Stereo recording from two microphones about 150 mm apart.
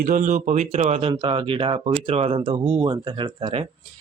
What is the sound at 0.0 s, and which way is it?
Speech, 60° right (ahead or behind).